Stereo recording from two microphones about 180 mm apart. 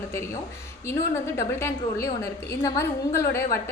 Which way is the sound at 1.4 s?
15° left (ahead or behind).